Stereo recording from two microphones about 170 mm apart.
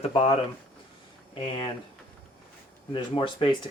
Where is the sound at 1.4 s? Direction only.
35° left (ahead or behind).